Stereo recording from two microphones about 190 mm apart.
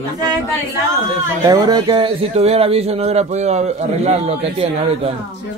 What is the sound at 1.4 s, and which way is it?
Speech, 20° right (ahead or behind).